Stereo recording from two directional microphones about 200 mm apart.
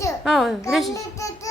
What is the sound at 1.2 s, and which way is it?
Speech, 15° left (ahead or behind).